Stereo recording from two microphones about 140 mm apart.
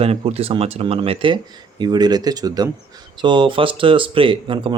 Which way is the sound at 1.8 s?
30° right (ahead or behind).